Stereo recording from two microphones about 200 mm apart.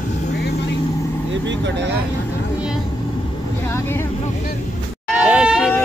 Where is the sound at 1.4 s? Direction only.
60° right (ahead or behind).